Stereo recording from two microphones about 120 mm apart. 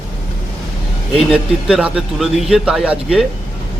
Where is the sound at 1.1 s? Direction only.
5° right (ahead or behind).